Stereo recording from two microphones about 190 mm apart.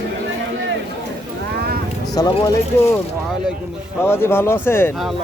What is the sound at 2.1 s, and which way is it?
Speech, 20° left (ahead or behind).